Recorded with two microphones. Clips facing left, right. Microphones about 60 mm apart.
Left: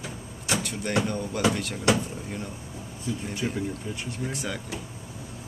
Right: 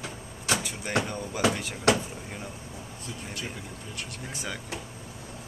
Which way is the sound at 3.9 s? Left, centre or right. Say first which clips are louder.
Left 4 dB; centre.